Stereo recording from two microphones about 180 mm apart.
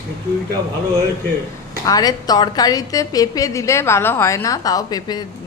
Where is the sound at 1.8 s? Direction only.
20° left (ahead or behind).